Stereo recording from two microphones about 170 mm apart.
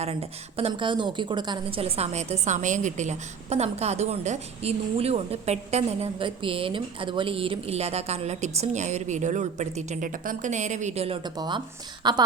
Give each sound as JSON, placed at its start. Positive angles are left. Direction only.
{"t": 0.0, "sound": "a woman's voice", "side_deg": -35}